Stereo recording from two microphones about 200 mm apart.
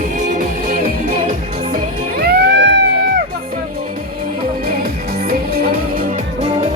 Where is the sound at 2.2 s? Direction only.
55° right (ahead or behind).